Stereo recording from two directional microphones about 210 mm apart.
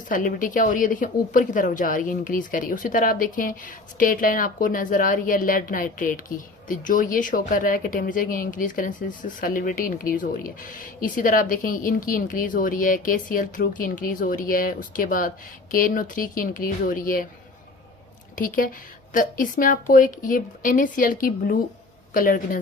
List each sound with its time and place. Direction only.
0.1 s a woman's voice: 40° left (ahead or behind)
18.3 s a woman's voice: 40° left (ahead or behind)